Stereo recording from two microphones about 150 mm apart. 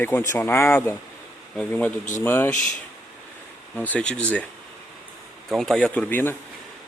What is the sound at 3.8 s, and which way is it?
Speech, 10° left (ahead or behind).